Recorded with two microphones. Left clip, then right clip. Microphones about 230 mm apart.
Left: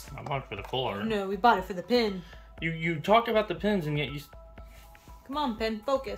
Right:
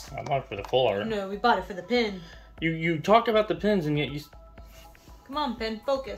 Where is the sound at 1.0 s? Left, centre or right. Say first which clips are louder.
Left 1 dB; left.